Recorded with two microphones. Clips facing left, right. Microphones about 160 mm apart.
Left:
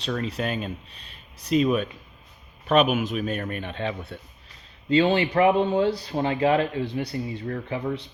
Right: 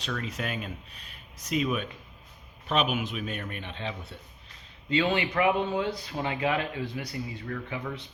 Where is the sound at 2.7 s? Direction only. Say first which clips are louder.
Left 7 dB; 50° left (ahead or behind).